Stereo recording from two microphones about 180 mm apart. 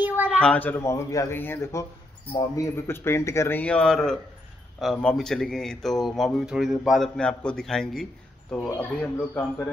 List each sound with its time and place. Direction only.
0.4 s speech: 10° left (ahead or behind)